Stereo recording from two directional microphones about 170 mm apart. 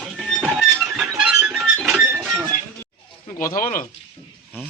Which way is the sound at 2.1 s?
5° right (ahead or behind).